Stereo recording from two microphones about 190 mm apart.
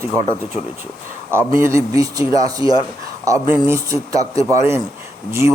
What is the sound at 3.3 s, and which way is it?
Speech, 15° right (ahead or behind).